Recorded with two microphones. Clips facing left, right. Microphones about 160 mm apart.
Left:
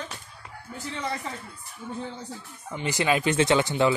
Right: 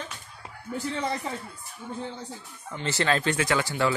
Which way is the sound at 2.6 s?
15° left (ahead or behind).